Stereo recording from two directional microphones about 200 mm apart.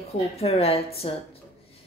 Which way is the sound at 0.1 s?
30° left (ahead or behind).